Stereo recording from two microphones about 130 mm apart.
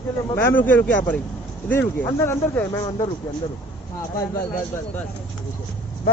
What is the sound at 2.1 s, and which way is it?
Speech, 25° left (ahead or behind).